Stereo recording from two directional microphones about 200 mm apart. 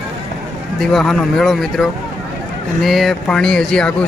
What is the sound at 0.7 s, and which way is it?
Speech, centre (ahead or behind).